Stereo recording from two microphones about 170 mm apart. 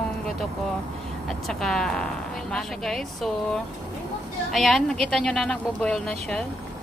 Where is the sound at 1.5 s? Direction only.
5° left (ahead or behind).